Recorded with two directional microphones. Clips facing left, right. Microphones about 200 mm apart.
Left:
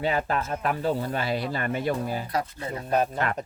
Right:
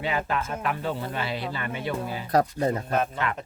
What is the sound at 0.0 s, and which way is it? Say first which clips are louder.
Speech: left 2 dB; 40° left (ahead or behind).